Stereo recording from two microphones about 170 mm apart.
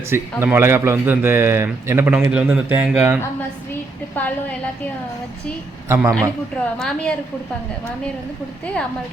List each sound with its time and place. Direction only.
0.1 s a man's voice: 15° right (ahead or behind)
4.1 s a woman's voice: 10° left (ahead or behind)
5.9 s a man's voice: 15° right (ahead or behind)
6.7 s a woman's voice: 5° left (ahead or behind)